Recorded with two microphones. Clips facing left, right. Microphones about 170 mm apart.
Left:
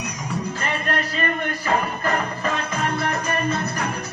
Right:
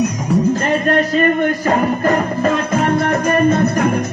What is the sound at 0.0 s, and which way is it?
Music, 45° right (ahead or behind).